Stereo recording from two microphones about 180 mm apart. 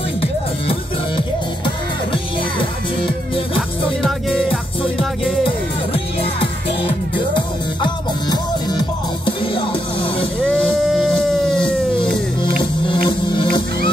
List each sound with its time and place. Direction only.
0.2 s music: 30° left (ahead or behind)
4.0 s music: centre (ahead or behind)
7.3 s music: 25° left (ahead or behind)
10.5 s music: centre (ahead or behind)
12.4 s music: 25° left (ahead or behind)